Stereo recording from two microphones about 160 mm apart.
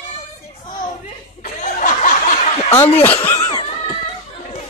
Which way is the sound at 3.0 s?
10° left (ahead or behind).